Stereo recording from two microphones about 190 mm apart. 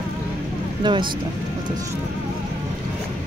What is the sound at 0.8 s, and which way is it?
Speech, 25° right (ahead or behind).